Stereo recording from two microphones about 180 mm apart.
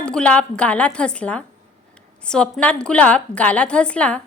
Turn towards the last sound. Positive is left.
turn(degrees=5)  # may be behind; listen again after turning